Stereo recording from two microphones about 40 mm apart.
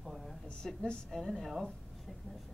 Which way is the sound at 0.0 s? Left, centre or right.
Centre.